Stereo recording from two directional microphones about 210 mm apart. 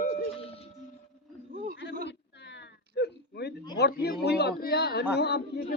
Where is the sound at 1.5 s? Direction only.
40° right (ahead or behind).